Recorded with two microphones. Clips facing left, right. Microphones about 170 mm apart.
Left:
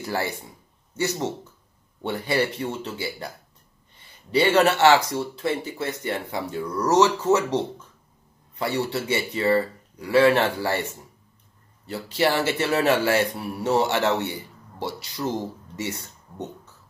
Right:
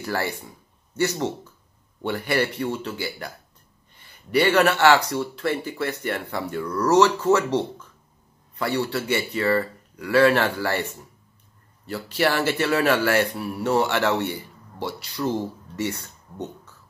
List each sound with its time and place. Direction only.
0.0 s a man's voice: 20° left (ahead or behind)
4.3 s a man's voice: 25° left (ahead or behind)